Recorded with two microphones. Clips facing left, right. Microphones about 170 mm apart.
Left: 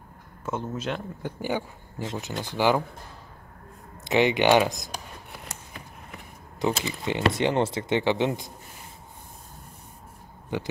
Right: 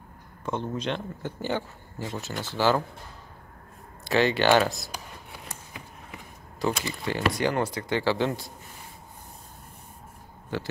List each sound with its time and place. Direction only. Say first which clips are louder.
0.5 s speech: right 1 dB; 5° left (ahead or behind)
4.0 s speech: left 1 dB; 20° left (ahead or behind)
6.6 s speech: left 1 dB; 20° left (ahead or behind)
10.5 s speech: left 1 dB; 20° left (ahead or behind)